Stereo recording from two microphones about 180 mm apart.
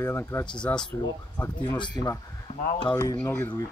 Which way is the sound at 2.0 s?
20° left (ahead or behind).